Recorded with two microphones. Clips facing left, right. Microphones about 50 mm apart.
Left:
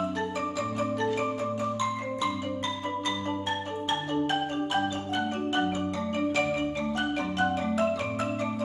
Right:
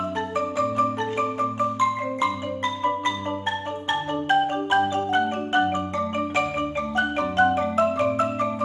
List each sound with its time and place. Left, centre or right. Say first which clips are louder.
0.6 s marimba: right 7 dB; right
3.9 s marimba: right 6 dB; right